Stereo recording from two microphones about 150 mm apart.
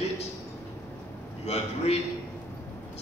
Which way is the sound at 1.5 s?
45° left (ahead or behind).